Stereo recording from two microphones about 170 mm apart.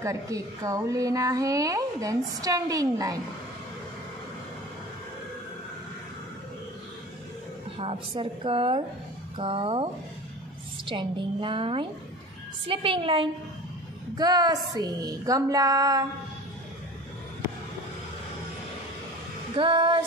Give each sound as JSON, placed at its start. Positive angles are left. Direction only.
{"t": 0.0, "sound": "a woman's voice", "side_deg": -20}
{"t": 7.7, "sound": "a woman's voice", "side_deg": -30}
{"t": 10.9, "sound": "a woman's voice", "side_deg": -30}
{"t": 19.5, "sound": "a woman's voice", "side_deg": -30}